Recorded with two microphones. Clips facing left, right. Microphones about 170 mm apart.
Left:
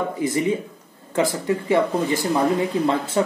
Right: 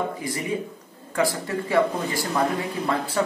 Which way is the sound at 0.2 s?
20° left (ahead or behind).